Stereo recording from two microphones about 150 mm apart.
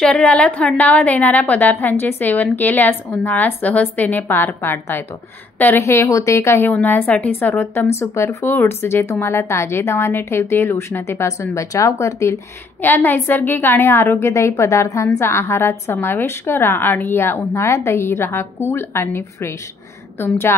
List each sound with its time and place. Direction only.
0.0 s a woman's voice: 10° left (ahead or behind)